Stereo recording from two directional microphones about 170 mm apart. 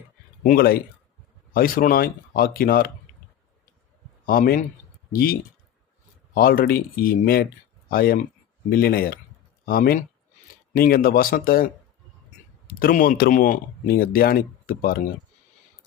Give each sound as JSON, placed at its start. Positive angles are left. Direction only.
{"t": 0.4, "sound": "speech", "side_deg": 60}
{"t": 4.3, "sound": "speech", "side_deg": 60}